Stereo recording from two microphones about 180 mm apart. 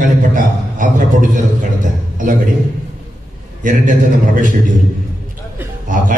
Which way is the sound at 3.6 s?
45° right (ahead or behind).